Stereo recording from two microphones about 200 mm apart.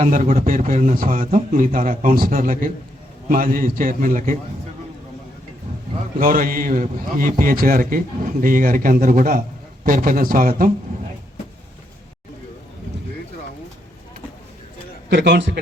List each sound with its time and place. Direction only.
0.0 s a man's voice: 40° right (ahead or behind)
6.1 s a man's voice: 45° right (ahead or behind)
15.1 s a man's voice: 60° right (ahead or behind)